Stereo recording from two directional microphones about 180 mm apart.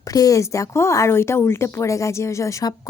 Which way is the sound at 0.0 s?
20° left (ahead or behind).